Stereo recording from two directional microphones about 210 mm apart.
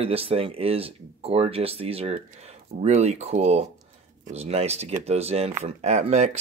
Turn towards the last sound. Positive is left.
turn(degrees=-30)  # may be behind; listen again after turning